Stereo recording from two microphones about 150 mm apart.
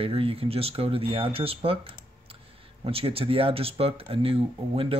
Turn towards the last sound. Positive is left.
turn(degrees=-40)  # may be behind; listen again after turning